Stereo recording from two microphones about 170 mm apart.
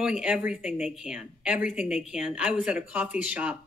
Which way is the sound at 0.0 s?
5° right (ahead or behind).